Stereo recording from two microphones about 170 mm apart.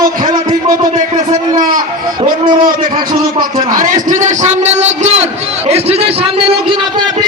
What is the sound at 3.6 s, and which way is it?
A man's voice, 50° right (ahead or behind).